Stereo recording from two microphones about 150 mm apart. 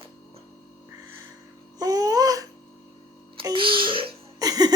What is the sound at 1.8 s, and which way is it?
Babbling, 25° right (ahead or behind).